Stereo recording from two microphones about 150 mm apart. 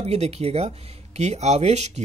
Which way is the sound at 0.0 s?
45° right (ahead or behind).